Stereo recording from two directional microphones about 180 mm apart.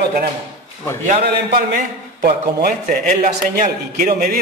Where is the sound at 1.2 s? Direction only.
55° right (ahead or behind).